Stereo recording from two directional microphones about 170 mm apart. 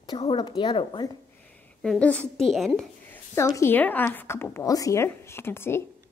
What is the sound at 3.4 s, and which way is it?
A woman's voice, 15° left (ahead or behind).